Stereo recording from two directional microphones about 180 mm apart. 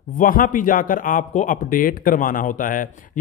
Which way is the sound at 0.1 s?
50° left (ahead or behind).